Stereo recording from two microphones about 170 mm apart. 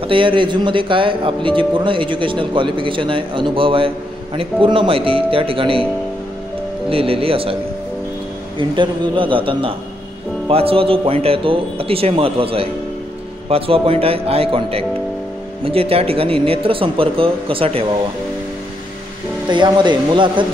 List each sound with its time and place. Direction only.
0.0 s speech: 30° right (ahead or behind)
6.9 s speech: 35° right (ahead or behind)
8.5 s speech: 30° right (ahead or behind)
19.5 s speech: 25° right (ahead or behind)